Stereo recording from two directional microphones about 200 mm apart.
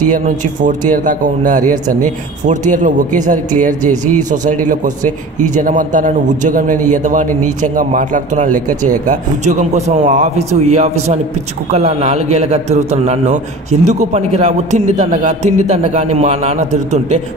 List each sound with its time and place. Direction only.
0.0 s a man's voice: 40° right (ahead or behind)